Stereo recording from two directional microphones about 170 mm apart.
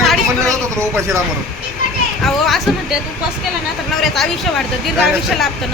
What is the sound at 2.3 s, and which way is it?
Speech, centre (ahead or behind).